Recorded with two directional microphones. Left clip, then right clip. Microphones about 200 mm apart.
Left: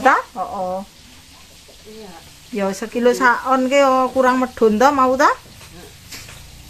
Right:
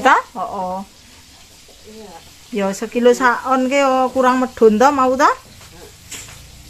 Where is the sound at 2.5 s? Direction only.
35° right (ahead or behind).